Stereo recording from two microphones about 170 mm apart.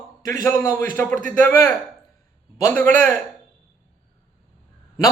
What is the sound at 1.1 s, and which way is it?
Speech, 50° right (ahead or behind).